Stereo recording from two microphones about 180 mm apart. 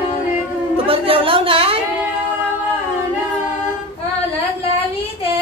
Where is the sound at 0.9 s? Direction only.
30° right (ahead or behind).